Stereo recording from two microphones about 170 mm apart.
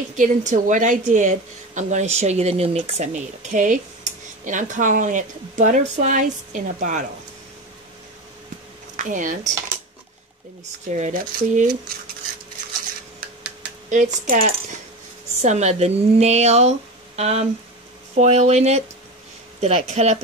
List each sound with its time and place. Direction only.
0.1 s a woman's voice: 45° right (ahead or behind)
8.9 s speech: 50° right (ahead or behind)
10.9 s a woman's voice: 50° right (ahead or behind)
13.8 s a woman's voice: 45° right (ahead or behind)